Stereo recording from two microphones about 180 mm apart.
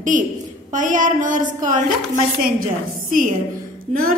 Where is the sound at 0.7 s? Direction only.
45° right (ahead or behind).